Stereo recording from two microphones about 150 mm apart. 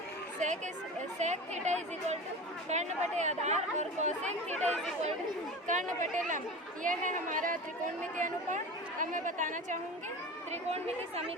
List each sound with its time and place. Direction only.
0.3 s chatter: 55° right (ahead or behind)
1.2 s speech: 50° right (ahead or behind)
4.7 s speech: 5° left (ahead or behind)
5.6 s a woman's voice: 55° right (ahead or behind)